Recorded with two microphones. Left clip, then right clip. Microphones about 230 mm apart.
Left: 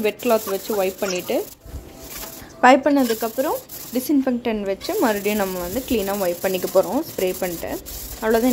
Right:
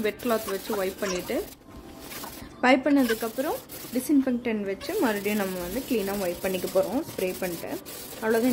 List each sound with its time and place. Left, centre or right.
0.0 s speech: centre
2.6 s a woman's voice: centre